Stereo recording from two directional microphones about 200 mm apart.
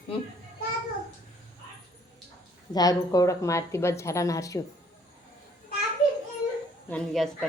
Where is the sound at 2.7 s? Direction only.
20° left (ahead or behind).